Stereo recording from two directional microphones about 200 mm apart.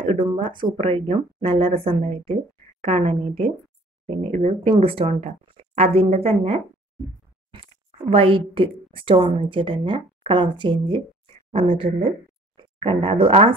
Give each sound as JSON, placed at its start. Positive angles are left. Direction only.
{"t": 0.0, "sound": "a sound", "side_deg": -25}
{"t": 0.4, "sound": "a woman's voice", "side_deg": -25}
{"t": 8.1, "sound": "a woman's voice", "side_deg": -25}